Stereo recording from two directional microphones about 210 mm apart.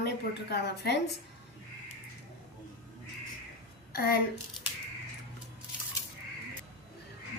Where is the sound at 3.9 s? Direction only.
45° left (ahead or behind).